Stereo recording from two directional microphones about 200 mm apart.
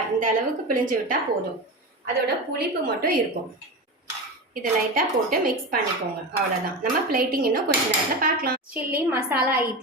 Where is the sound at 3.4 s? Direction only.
45° right (ahead or behind).